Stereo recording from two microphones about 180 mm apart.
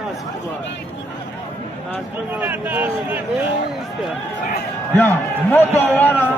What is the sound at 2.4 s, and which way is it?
Speech, 10° right (ahead or behind).